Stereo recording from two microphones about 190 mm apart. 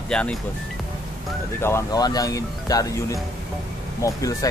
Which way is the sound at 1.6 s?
15° left (ahead or behind).